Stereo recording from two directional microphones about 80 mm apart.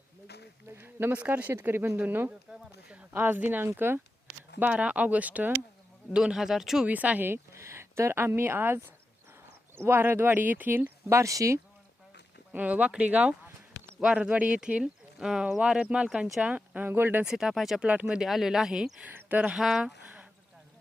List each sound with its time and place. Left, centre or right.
0.7 s speech: right
4.6 s speech: centre
6.1 s speech: centre
6.8 s speech: centre
7.5 s speech: right
11.2 s speech: right
12.5 s speech: centre
17.2 s speech: centre
19.0 s speech: right
19.5 s speech: centre